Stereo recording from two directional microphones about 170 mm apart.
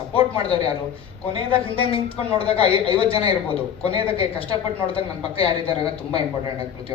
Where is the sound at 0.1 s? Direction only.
35° left (ahead or behind).